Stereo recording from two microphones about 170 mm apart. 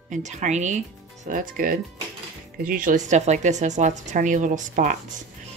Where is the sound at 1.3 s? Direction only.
55° right (ahead or behind).